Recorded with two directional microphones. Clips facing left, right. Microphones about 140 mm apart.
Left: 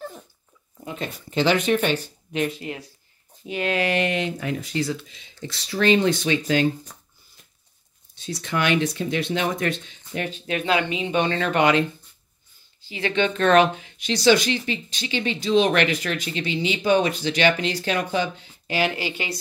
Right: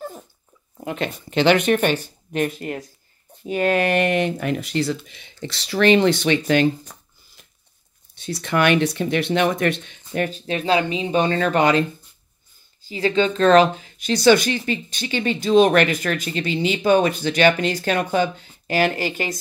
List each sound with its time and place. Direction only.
0.7 s speech: 70° right (ahead or behind)
8.2 s speech: 60° right (ahead or behind)
10.1 s speech: 45° right (ahead or behind)
12.8 s speech: 35° right (ahead or behind)